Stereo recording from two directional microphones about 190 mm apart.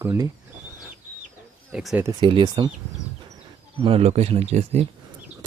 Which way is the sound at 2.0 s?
25° right (ahead or behind).